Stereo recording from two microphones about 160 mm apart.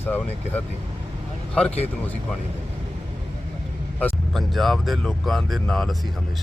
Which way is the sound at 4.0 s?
Centre (ahead or behind).